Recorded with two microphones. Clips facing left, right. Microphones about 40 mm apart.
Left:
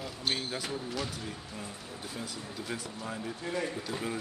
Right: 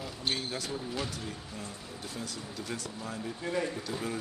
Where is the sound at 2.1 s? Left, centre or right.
Centre.